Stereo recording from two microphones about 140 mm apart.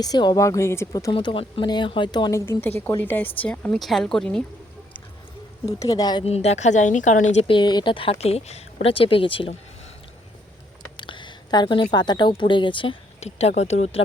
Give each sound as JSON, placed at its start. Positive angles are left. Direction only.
{"t": 0.0, "sound": "speech", "side_deg": 30}
{"t": 1.1, "sound": "speech", "side_deg": 40}
{"t": 2.5, "sound": "a woman's voice", "side_deg": 15}
{"t": 5.6, "sound": "speech", "side_deg": 25}
{"t": 6.2, "sound": "speech", "side_deg": 50}
{"t": 7.4, "sound": "speech", "side_deg": 35}
{"t": 10.9, "sound": "speech", "side_deg": 35}
{"t": 13.1, "sound": "speech", "side_deg": 50}